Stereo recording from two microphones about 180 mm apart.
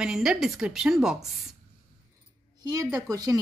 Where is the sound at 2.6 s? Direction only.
20° right (ahead or behind).